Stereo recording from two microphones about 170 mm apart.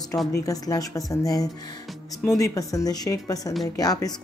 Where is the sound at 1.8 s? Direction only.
Centre (ahead or behind).